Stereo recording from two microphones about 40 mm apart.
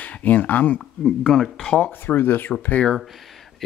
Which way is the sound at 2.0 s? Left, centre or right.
Left.